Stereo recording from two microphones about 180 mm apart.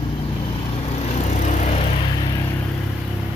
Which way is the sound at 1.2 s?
40° left (ahead or behind).